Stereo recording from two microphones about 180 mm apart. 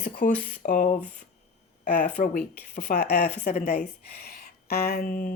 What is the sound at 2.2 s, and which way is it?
Speech, 55° left (ahead or behind).